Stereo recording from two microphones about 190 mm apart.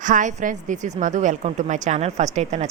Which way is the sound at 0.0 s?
40° right (ahead or behind).